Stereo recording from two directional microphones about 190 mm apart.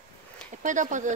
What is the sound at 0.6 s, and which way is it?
Speech, 40° right (ahead or behind).